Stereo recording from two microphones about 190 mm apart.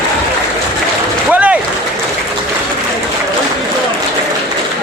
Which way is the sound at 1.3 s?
5° right (ahead or behind).